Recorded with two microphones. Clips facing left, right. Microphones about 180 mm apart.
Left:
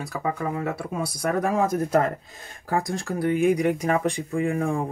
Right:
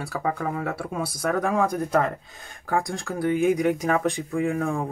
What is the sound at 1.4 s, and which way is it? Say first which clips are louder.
Speech: left 2 dB; centre (ahead or behind).